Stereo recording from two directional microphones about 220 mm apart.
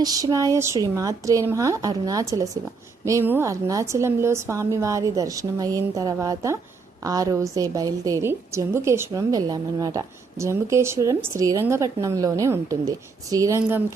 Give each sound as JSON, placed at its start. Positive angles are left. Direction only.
{"t": 0.0, "sound": "a woman's voice", "side_deg": -15}